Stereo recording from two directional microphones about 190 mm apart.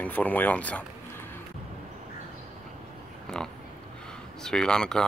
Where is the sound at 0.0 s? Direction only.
10° left (ahead or behind).